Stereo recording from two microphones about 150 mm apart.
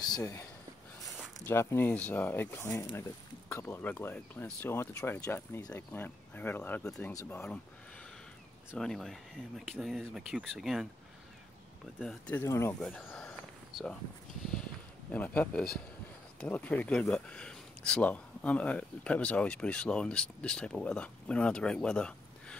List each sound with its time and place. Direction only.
0.1 s speech: 20° left (ahead or behind)
7.2 s speech: 20° left (ahead or behind)
8.7 s speech: centre (ahead or behind)
12.0 s speech: 5° left (ahead or behind)
12.8 s speech: 5° left (ahead or behind)
15.0 s speech: 10° left (ahead or behind)